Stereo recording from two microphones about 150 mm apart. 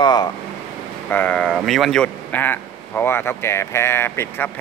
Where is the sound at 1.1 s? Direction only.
10° left (ahead or behind).